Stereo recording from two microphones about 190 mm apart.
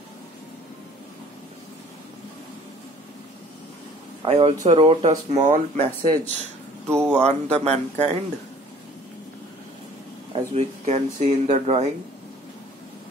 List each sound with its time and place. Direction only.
4.2 s speech: 30° right (ahead or behind)
6.9 s speech: 15° right (ahead or behind)
7.2 s speech: 35° right (ahead or behind)
10.3 s speech: 35° right (ahead or behind)